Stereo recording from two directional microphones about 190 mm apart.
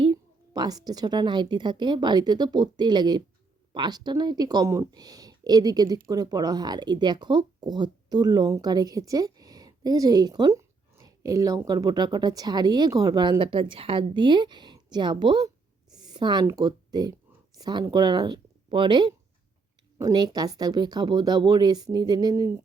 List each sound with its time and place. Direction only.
0.0 s a woman's voice: 25° right (ahead or behind)